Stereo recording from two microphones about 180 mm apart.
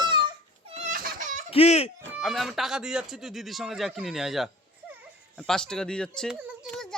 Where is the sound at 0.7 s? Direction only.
45° right (ahead or behind).